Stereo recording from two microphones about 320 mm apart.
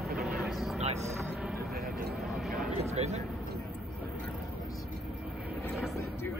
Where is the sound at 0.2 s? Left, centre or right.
Centre.